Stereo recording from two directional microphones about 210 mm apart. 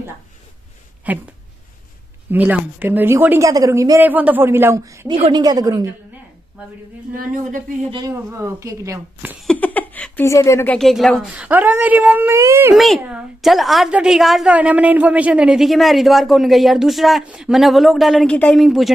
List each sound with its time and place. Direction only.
1.1 s speech: 5° right (ahead or behind)
2.3 s speech: 5° right (ahead or behind)
7.2 s a woman's voice: 40° right (ahead or behind)
7.9 s speech: 15° right (ahead or behind)
9.5 s a woman's voice: 5° left (ahead or behind); by 12.7 s 10° right (ahead or behind)
12.7 s a woman's voice: centre (ahead or behind)